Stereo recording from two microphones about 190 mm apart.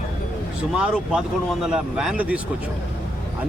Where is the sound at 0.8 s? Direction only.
5° right (ahead or behind).